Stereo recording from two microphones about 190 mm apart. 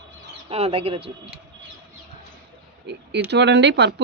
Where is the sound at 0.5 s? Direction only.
30° right (ahead or behind).